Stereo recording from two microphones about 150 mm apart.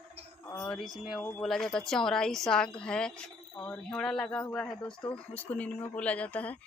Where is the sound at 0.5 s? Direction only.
15° left (ahead or behind).